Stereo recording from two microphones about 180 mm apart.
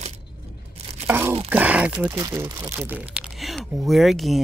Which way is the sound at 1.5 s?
10° right (ahead or behind).